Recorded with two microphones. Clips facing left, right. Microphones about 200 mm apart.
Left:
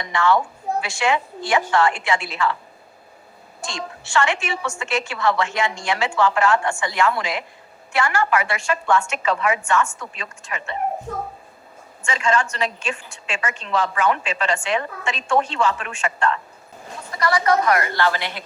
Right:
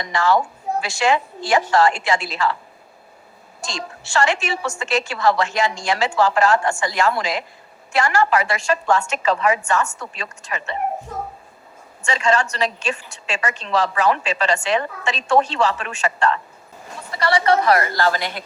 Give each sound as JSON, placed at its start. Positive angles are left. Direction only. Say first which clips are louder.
{"t": 0.0, "sound": "a woman's voice", "louder": "right 1 dB", "side_deg": -40}
{"t": 4.1, "sound": "a woman's voice", "louder": "right 2 dB", "side_deg": -40}
{"t": 12.0, "sound": "a woman's voice", "louder": "right 2 dB", "side_deg": -40}